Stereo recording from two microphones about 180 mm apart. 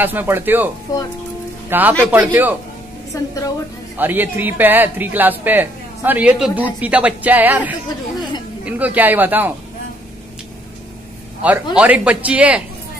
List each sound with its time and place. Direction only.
0.0 s speech: 10° right (ahead or behind)
0.9 s speech: 20° left (ahead or behind)
1.7 s speech: 10° right (ahead or behind)
3.1 s a woman's voice: 15° left (ahead or behind)
3.9 s speech: 10° right (ahead or behind)
11.4 s speech: 10° right (ahead or behind)